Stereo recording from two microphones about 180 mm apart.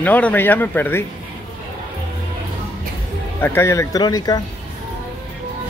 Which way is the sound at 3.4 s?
15° left (ahead or behind).